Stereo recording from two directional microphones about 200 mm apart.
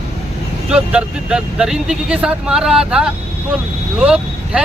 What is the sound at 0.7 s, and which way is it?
Speech, 5° right (ahead or behind).